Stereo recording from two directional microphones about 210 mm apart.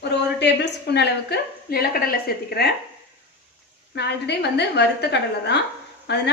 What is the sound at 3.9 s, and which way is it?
A woman's voice, 55° left (ahead or behind).